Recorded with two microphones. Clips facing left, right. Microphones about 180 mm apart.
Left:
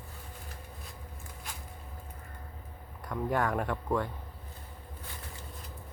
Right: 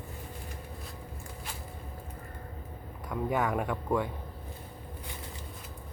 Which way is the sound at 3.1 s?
5° right (ahead or behind).